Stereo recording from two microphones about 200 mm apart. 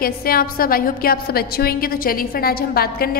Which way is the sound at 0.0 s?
50° left (ahead or behind).